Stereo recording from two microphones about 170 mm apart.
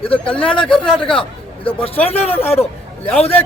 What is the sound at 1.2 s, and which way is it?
Speech, 30° left (ahead or behind).